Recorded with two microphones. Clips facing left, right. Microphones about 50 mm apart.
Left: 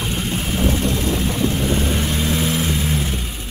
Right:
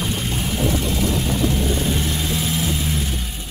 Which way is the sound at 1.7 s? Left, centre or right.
Left.